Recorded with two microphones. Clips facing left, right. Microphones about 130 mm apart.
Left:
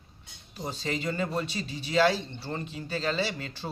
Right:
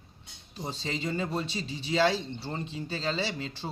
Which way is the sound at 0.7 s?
25° right (ahead or behind).